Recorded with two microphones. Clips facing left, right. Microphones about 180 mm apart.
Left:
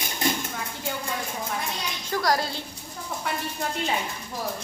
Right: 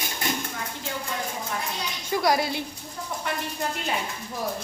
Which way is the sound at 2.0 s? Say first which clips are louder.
Right 2 dB; 10° right (ahead or behind).